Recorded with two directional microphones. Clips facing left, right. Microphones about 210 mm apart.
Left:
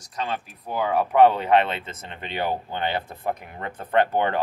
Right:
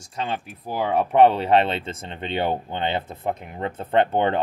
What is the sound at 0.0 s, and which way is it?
Speech, 30° right (ahead or behind).